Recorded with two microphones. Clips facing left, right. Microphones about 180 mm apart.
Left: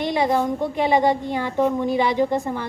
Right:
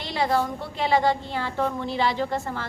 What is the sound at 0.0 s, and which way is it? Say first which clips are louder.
A woman's voice: left 4 dB; 20° left (ahead or behind).